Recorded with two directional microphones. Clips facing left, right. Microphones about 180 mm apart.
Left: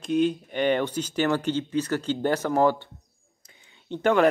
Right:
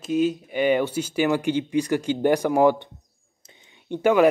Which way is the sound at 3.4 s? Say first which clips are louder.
Right 4 dB; 20° right (ahead or behind).